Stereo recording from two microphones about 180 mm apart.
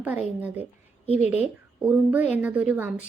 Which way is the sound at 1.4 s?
5° right (ahead or behind).